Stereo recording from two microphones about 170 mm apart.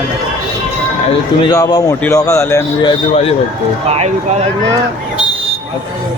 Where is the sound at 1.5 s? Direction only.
20° left (ahead or behind).